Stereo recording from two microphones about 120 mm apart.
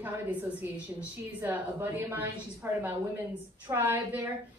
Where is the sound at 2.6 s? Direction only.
20° right (ahead or behind).